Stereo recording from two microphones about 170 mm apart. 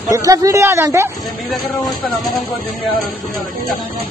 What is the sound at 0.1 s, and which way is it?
A man's voice, 20° right (ahead or behind).